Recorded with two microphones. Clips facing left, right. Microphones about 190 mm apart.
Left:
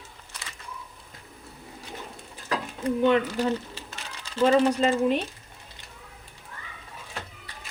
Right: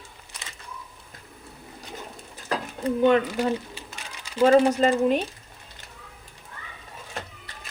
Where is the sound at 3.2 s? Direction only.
15° right (ahead or behind).